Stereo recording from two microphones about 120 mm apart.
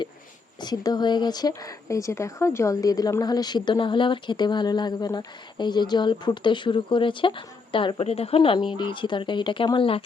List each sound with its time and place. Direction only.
0.6 s speech: 35° left (ahead or behind)